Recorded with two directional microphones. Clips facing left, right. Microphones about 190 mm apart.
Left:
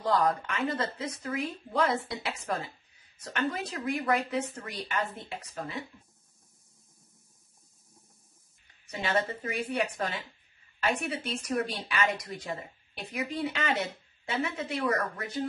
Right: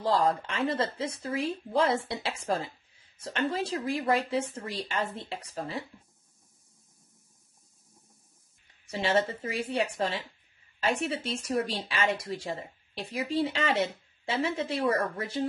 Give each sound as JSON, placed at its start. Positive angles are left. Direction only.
{"t": 0.0, "sound": "speech", "side_deg": -25}
{"t": 8.9, "sound": "speech", "side_deg": -30}